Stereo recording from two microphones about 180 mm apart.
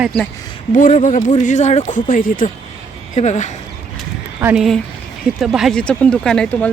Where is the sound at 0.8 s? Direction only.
45° left (ahead or behind).